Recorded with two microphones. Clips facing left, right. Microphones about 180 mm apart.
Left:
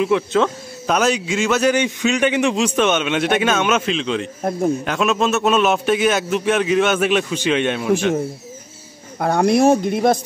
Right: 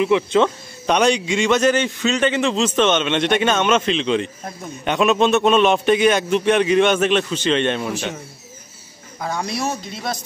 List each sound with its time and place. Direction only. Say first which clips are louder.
0.0 s a man's voice: right 1 dB; centre (ahead or behind)
9.2 s speech: left 10 dB; 55° left (ahead or behind)